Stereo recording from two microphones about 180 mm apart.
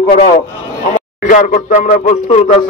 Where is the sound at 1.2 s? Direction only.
45° left (ahead or behind).